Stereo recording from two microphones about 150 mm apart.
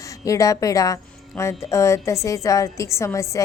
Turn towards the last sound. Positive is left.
turn(degrees=20)  # may be behind; listen again after turning